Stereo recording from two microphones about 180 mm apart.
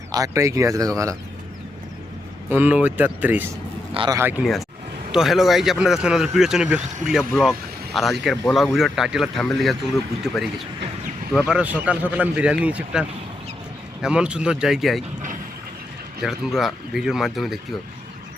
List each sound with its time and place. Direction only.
0.1 s a man's voice: 20° right (ahead or behind)
2.5 s a man's voice: 10° right (ahead or behind)
3.9 s speech: 25° right (ahead or behind)
4.2 s a man's voice: 10° right (ahead or behind)
5.1 s a man's voice: centre (ahead or behind)
16.2 s speech: centre (ahead or behind)